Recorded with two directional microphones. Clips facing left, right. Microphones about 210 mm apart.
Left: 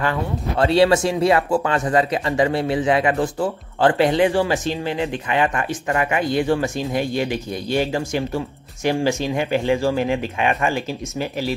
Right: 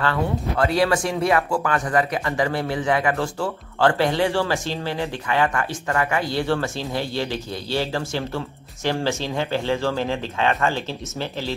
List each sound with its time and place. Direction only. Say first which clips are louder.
0.0 s speech: even; 15° left (ahead or behind)
0.7 s speech: left 6 dB; 25° left (ahead or behind)